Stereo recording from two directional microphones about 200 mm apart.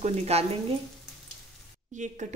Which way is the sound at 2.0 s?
40° right (ahead or behind).